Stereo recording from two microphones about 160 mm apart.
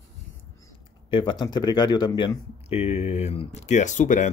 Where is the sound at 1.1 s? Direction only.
30° left (ahead or behind).